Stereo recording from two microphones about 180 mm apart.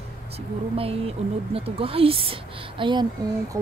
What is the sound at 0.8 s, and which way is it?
Speech, 30° right (ahead or behind).